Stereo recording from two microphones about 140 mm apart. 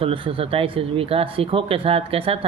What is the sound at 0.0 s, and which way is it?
Speech, 40° right (ahead or behind).